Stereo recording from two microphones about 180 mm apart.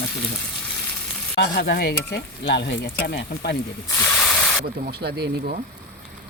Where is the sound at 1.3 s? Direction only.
65° left (ahead or behind).